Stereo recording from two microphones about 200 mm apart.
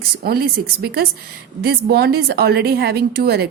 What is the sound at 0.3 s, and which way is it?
A woman's voice, 50° right (ahead or behind).